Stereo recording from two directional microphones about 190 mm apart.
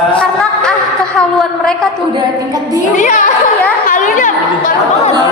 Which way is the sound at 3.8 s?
45° left (ahead or behind).